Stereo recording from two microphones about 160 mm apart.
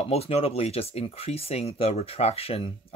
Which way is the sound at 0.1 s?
40° left (ahead or behind).